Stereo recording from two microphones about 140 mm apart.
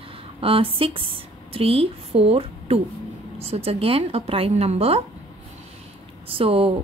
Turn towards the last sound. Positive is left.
turn(degrees=-40)  # may be behind; listen again after turning